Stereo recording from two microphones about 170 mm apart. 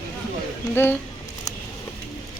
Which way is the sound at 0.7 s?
15° left (ahead or behind).